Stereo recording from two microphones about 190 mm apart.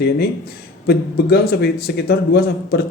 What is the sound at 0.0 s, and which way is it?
Speech, 55° left (ahead or behind).